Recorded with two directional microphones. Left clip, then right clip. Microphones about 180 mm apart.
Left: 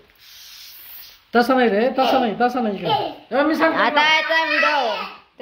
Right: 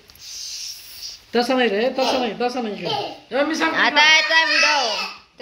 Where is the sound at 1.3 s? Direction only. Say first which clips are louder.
Left 3 dB; 60° left (ahead or behind).